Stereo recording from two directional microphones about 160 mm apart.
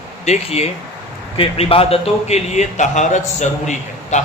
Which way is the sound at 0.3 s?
40° left (ahead or behind).